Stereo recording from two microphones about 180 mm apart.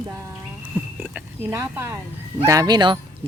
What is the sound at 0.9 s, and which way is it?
Speech, 10° right (ahead or behind).